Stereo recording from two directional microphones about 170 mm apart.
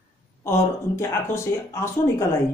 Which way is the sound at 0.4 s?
15° left (ahead or behind).